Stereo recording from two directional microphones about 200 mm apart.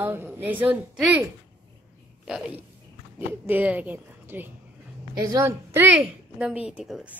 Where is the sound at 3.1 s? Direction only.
10° right (ahead or behind).